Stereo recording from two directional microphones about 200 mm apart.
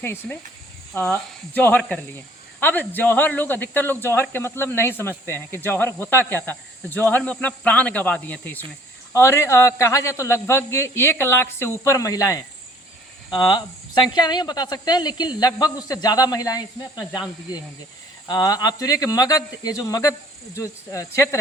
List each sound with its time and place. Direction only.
0.0 s a woman's voice: 10° left (ahead or behind)
18.3 s speech: 20° left (ahead or behind)